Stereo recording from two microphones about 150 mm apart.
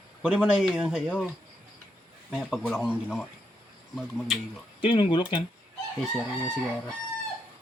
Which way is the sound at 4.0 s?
Centre (ahead or behind).